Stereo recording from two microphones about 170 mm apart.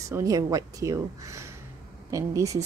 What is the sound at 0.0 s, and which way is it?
Speech, 20° right (ahead or behind).